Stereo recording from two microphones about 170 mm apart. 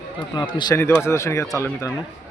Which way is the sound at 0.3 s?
25° left (ahead or behind).